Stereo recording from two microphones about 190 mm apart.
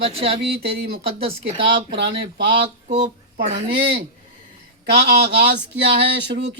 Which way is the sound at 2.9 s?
40° right (ahead or behind).